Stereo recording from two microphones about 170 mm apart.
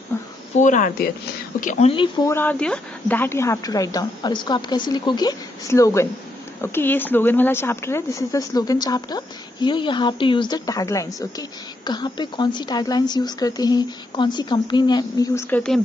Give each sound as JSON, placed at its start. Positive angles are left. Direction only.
{"t": 0.1, "sound": "a sound", "side_deg": 15}
{"t": 0.6, "sound": "speech", "side_deg": 50}
{"t": 2.2, "sound": "speech", "side_deg": 10}
{"t": 15.5, "sound": "speech", "side_deg": 5}